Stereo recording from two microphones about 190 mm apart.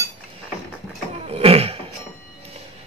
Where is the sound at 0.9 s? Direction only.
30° right (ahead or behind).